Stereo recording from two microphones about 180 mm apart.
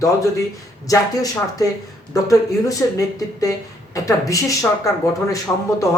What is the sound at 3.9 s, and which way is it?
Speech, 20° left (ahead or behind).